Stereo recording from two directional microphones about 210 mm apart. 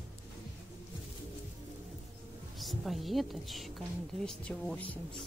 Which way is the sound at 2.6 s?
Centre (ahead or behind).